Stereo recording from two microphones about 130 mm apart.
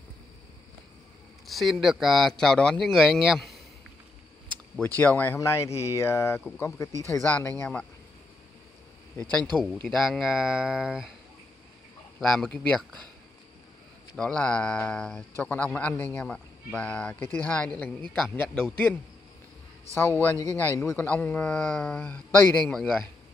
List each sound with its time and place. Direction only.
1.4 s speech: centre (ahead or behind)
4.8 s speech: 15° left (ahead or behind)
9.5 s speech: 10° left (ahead or behind)
9.8 s speech: centre (ahead or behind)
12.2 s speech: 5° left (ahead or behind)
14.1 s speech: 5° left (ahead or behind)
20.2 s speech: 20° left (ahead or behind)